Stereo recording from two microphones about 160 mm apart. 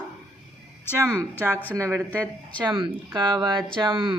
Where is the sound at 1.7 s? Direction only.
20° right (ahead or behind).